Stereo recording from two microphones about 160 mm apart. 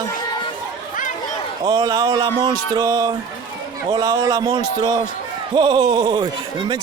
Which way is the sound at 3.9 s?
25° right (ahead or behind).